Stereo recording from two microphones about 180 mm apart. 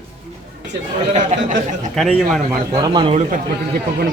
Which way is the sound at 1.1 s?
40° right (ahead or behind).